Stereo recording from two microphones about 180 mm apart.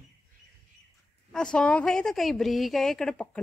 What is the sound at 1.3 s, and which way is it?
A woman's voice, 5° left (ahead or behind).